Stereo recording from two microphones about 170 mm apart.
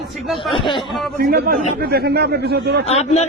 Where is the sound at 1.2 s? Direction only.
60° right (ahead or behind).